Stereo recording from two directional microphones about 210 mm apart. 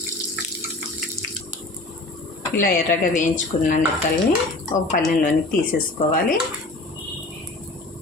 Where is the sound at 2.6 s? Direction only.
40° left (ahead or behind).